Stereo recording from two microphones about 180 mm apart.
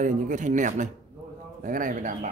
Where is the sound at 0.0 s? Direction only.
45° right (ahead or behind).